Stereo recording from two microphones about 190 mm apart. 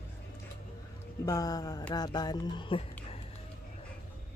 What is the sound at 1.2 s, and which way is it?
Speech, 20° left (ahead or behind).